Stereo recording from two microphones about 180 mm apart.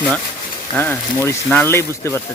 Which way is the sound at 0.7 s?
10° left (ahead or behind).